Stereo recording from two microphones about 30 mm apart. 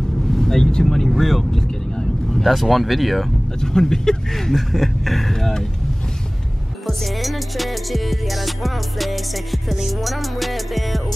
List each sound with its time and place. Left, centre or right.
0.3 s vehicle: centre
0.8 s speech: centre
1.5 s vehicle: centre
2.4 s music: centre
3.6 s speech: centre
6.9 s music: centre